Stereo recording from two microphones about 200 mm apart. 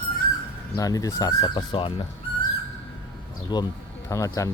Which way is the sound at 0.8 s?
15° left (ahead or behind).